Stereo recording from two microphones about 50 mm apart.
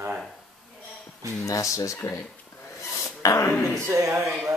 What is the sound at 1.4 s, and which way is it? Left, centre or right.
Speech, left.